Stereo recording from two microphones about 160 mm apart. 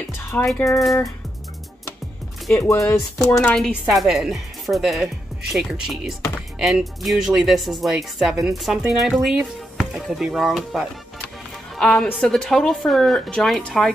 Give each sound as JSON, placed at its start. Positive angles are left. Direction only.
{"t": 0.3, "sound": "speech", "side_deg": 10}
{"t": 2.6, "sound": "speech", "side_deg": 15}
{"t": 3.8, "sound": "speech", "side_deg": 0}